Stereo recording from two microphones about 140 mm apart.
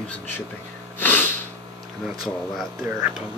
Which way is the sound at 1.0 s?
15° left (ahead or behind).